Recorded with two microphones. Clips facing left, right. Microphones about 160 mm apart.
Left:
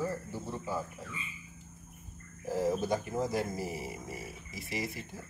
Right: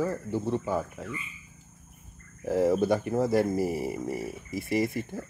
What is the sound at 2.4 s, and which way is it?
Speech, 65° right (ahead or behind).